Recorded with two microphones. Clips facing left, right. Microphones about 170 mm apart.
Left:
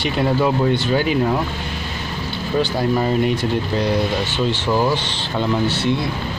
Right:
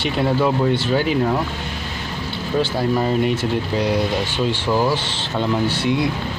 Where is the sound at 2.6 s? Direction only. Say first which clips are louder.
Left 1 dB; centre (ahead or behind).